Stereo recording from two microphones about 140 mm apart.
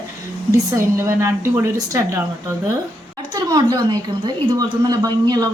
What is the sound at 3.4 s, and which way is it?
A woman's voice, 30° right (ahead or behind).